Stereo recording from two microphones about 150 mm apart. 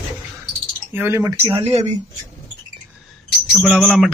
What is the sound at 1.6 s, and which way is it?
Speech, 45° right (ahead or behind).